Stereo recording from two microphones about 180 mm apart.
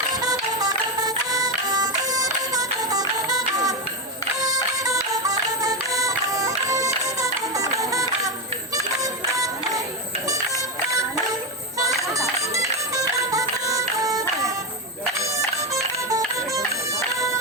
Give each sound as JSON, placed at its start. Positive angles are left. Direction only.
{"t": 0.1, "sound": "music", "side_deg": -20}
{"t": 9.3, "sound": "music", "side_deg": -20}
{"t": 11.8, "sound": "music", "side_deg": -20}
{"t": 15.7, "sound": "music", "side_deg": -20}